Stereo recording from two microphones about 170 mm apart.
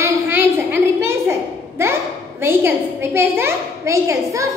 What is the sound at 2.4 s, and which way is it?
A woman's voice, 15° right (ahead or behind).